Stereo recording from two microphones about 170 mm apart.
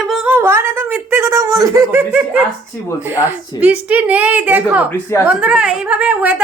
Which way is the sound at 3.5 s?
10° right (ahead or behind).